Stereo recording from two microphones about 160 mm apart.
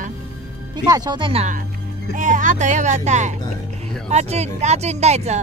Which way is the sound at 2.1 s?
55° right (ahead or behind).